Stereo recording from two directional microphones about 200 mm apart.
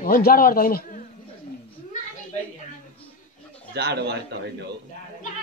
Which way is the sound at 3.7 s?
55° right (ahead or behind).